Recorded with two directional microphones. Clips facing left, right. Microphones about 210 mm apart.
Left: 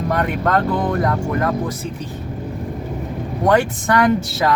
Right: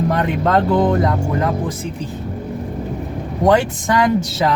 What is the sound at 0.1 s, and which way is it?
Speech, 20° right (ahead or behind).